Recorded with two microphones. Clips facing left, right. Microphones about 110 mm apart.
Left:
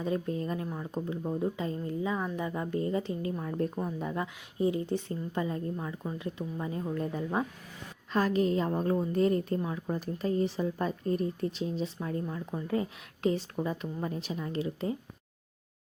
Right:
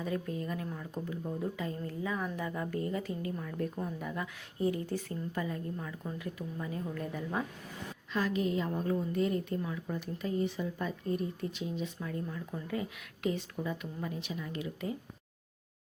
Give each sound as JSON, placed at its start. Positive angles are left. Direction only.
{"t": 0.0, "sound": "speech", "side_deg": 30}
{"t": 8.1, "sound": "speech", "side_deg": 40}